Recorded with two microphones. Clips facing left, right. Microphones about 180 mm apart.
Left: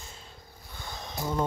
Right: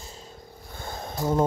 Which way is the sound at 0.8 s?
50° right (ahead or behind).